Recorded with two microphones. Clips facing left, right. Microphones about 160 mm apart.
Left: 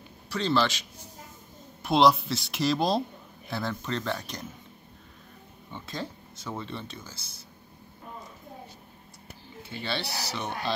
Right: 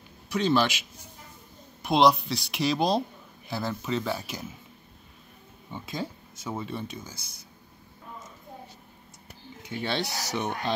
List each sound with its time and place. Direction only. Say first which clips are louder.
0.3 s speech: right 2 dB; 15° right (ahead or behind)
1.8 s speech: even; centre (ahead or behind)
5.7 s speech: right 2 dB; 10° right (ahead or behind)
9.6 s speech: right 3 dB; 15° right (ahead or behind)